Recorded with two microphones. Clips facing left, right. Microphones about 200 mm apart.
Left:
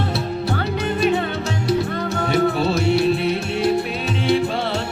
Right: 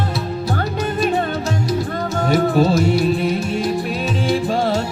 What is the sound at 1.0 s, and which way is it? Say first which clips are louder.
Music: left 1 dB; 45° right (ahead or behind).